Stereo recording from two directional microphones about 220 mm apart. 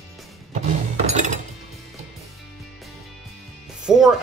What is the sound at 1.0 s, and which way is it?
Mechanisms, 30° right (ahead or behind).